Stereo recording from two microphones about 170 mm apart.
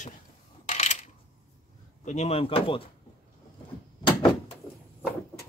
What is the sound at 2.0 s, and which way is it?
Speech, 40° left (ahead or behind).